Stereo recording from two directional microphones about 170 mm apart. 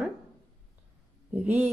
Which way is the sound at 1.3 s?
10° right (ahead or behind).